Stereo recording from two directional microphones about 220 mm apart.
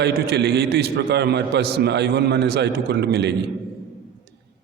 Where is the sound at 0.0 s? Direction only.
50° right (ahead or behind).